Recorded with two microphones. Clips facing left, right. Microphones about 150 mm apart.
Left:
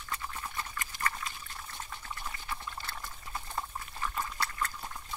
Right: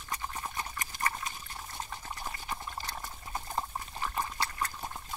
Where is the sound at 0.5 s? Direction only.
20° right (ahead or behind).